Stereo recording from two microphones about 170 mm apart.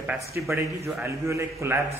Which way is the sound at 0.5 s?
15° right (ahead or behind).